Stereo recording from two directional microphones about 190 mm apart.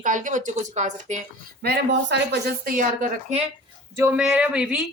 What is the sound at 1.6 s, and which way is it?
A woman's voice, 60° right (ahead or behind).